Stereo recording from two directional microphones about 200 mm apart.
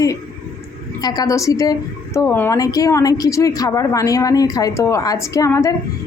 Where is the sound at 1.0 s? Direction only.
20° left (ahead or behind).